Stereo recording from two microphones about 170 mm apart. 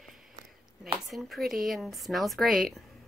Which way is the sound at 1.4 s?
60° right (ahead or behind).